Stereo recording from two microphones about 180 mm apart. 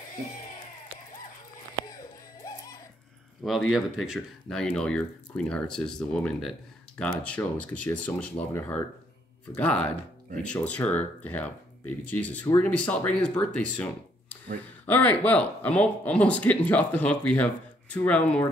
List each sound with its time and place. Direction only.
2.4 s music: 20° left (ahead or behind)
3.4 s speech: centre (ahead or behind)